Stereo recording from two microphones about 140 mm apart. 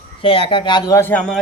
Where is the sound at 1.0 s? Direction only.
10° left (ahead or behind).